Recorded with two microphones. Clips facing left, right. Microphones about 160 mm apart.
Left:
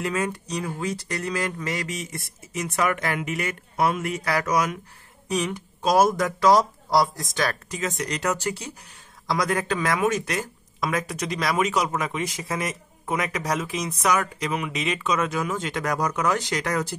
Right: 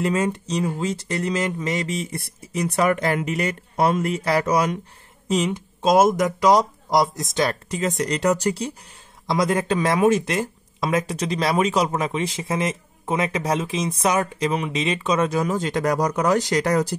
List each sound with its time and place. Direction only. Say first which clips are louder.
0.0 s speech: right 5 dB; 25° right (ahead or behind)